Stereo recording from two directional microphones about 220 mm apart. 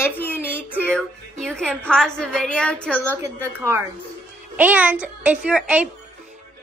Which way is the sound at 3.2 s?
15° right (ahead or behind).